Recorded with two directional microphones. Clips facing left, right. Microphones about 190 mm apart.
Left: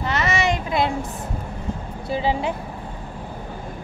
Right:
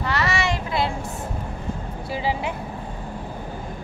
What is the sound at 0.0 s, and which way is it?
Child singing, 20° left (ahead or behind).